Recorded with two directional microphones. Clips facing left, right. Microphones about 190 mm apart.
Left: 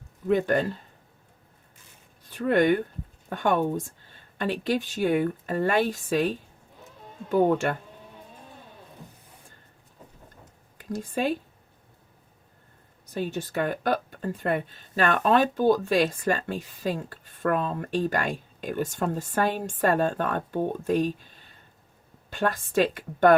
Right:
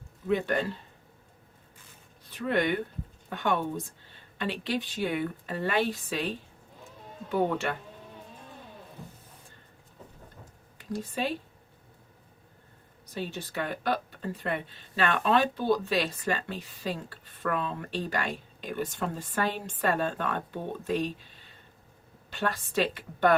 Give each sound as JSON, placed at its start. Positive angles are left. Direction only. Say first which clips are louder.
{"t": 0.3, "sound": "speech", "louder": "left 5 dB", "side_deg": 45}
{"t": 2.3, "sound": "speech", "louder": "left 6 dB", "side_deg": 45}
{"t": 10.8, "sound": "speech", "louder": "left 4 dB", "side_deg": 45}
{"t": 13.1, "sound": "speech", "louder": "left 6 dB", "side_deg": 45}